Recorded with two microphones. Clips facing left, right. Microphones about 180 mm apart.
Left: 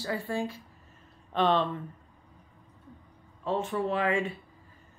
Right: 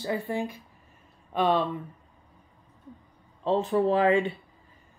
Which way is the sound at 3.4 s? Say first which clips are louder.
Right 6 dB; 30° right (ahead or behind).